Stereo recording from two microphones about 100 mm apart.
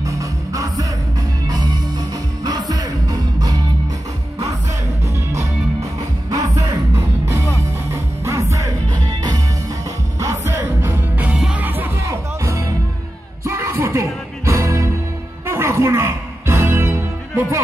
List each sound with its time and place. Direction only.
0.0 s music: 35° right (ahead or behind)
1.5 s music: 45° right (ahead or behind)
6.3 s music: 35° right (ahead or behind)
8.9 s music: 45° right (ahead or behind)
10.2 s music: 25° right (ahead or behind)
12.0 s music: 30° right (ahead or behind)